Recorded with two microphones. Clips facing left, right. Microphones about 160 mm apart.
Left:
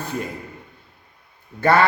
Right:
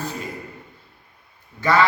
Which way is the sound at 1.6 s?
55° left (ahead or behind).